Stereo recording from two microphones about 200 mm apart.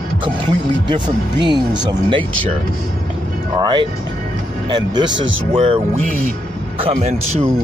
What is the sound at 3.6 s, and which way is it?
Speech, 25° right (ahead or behind).